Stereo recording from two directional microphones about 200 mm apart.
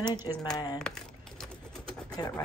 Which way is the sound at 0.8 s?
5° left (ahead or behind).